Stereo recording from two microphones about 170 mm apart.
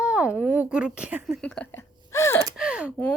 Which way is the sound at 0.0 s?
5° right (ahead or behind).